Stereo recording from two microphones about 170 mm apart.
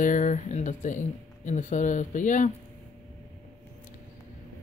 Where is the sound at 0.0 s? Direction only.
45° left (ahead or behind).